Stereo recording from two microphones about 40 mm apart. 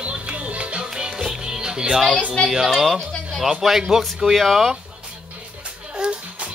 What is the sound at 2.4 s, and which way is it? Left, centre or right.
A woman's voice, centre.